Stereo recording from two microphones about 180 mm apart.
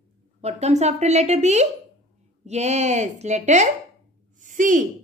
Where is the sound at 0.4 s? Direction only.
35° right (ahead or behind).